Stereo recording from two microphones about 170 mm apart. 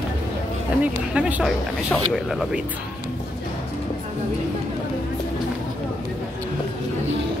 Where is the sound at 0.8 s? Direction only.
10° right (ahead or behind).